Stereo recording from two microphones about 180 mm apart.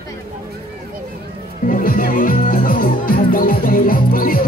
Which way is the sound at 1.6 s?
50° left (ahead or behind).